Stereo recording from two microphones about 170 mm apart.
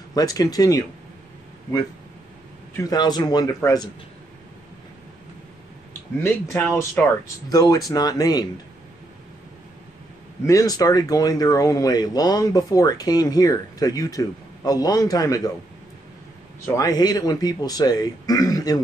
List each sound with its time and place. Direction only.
0.1 s speech: 20° left (ahead or behind)
2.7 s speech: 20° left (ahead or behind)
6.1 s speech: 15° left (ahead or behind)
10.4 s speech: 20° left (ahead or behind)
16.6 s speech: 20° left (ahead or behind)